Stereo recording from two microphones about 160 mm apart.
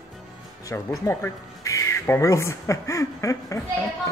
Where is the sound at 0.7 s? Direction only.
15° left (ahead or behind).